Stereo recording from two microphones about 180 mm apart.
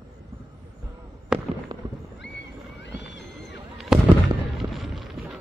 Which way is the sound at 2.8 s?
75° left (ahead or behind).